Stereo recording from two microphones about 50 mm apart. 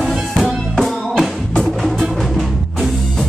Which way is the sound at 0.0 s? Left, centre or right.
Centre.